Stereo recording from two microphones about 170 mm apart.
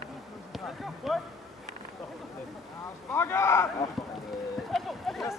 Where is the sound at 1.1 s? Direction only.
Centre (ahead or behind).